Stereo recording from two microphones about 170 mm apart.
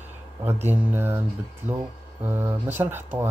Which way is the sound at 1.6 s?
45° right (ahead or behind).